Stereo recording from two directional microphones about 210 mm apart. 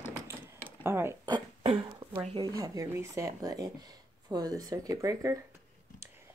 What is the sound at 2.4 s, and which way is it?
Speech, 15° right (ahead or behind).